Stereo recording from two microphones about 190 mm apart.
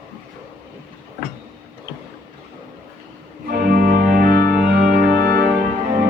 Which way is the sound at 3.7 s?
50° right (ahead or behind).